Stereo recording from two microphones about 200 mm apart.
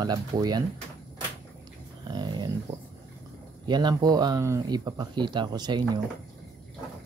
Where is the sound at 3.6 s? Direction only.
20° right (ahead or behind).